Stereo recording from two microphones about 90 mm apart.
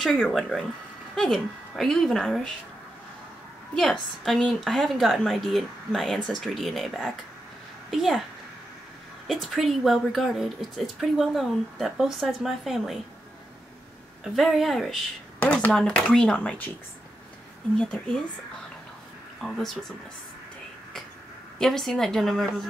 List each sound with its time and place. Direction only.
0.0 s a woman's voice: 5° left (ahead or behind)
3.7 s a woman's voice: 5° left (ahead or behind)
9.3 s a woman's voice: centre (ahead or behind)
14.3 s a woman's voice: centre (ahead or behind)
15.3 s speech: 20° left (ahead or behind)
15.7 s speech: 10° left (ahead or behind)
17.7 s speech: 10° left (ahead or behind)
19.4 s a woman's voice: 5° left (ahead or behind)
21.5 s a woman's voice: 5° left (ahead or behind)